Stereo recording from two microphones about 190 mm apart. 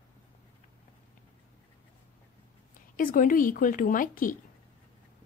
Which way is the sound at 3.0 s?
45° left (ahead or behind).